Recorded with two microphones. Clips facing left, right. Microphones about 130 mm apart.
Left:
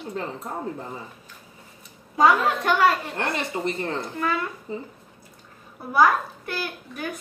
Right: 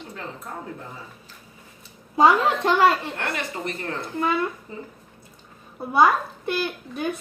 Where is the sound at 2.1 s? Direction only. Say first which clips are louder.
Right 1 dB; 25° right (ahead or behind).